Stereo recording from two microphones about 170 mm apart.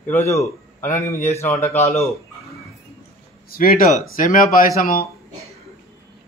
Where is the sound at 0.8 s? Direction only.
50° left (ahead or behind).